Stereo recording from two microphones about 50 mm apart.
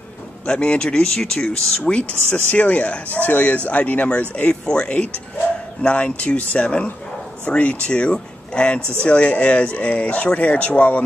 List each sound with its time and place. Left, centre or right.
0.5 s speech: left
1.9 s speech: left